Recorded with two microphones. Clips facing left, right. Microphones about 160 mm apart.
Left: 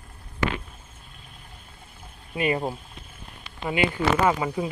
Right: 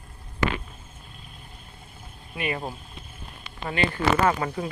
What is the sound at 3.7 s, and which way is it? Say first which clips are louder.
Speech: left 1 dB; 15° left (ahead or behind).